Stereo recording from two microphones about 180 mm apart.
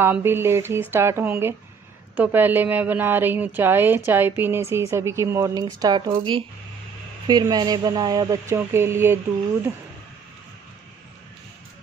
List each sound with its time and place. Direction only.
0.0 s a woman's voice: 15° right (ahead or behind)